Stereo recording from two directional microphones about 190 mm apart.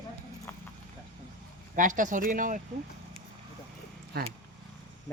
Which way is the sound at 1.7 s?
45° right (ahead or behind).